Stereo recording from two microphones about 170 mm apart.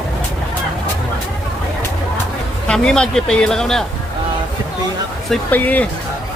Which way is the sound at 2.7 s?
5° left (ahead or behind).